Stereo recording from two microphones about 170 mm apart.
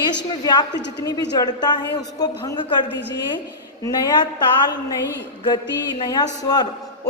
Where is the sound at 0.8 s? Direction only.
90° left.